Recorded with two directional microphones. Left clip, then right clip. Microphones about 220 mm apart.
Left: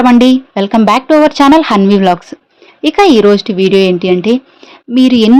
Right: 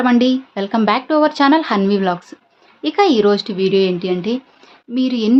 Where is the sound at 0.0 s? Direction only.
30° left (ahead or behind).